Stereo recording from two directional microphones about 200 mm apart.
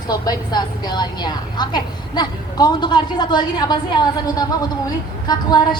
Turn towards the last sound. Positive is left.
turn(degrees=20)  # may be behind; listen again after turning